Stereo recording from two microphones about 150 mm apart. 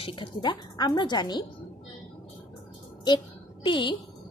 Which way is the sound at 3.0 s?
30° left (ahead or behind).